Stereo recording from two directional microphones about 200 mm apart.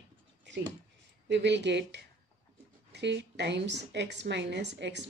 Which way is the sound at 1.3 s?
60° right (ahead or behind).